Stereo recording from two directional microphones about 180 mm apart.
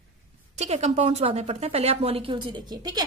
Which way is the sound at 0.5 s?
35° right (ahead or behind).